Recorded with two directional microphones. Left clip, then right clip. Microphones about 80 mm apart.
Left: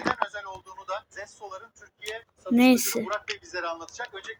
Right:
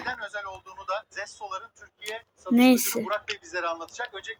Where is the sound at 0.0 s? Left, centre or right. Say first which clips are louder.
Left 4 dB; right.